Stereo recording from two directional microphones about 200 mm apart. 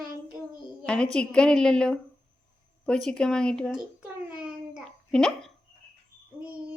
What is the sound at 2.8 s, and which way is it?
Babbling, 5° left (ahead or behind).